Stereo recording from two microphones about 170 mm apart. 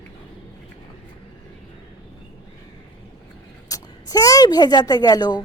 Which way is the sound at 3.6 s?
20° left (ahead or behind).